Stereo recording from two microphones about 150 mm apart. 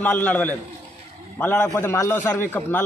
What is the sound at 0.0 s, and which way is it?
A man's voice, 10° left (ahead or behind).